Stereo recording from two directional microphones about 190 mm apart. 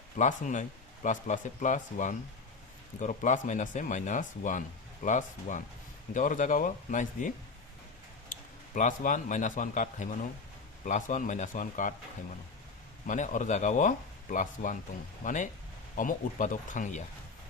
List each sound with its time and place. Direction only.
0.2 s a man's voice: 40° left (ahead or behind)
8.7 s a man's voice: 45° left (ahead or behind)
13.1 s a man's voice: 40° left (ahead or behind)